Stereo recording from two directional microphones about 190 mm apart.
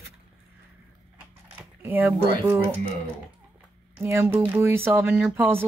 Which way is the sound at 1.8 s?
10° right (ahead or behind).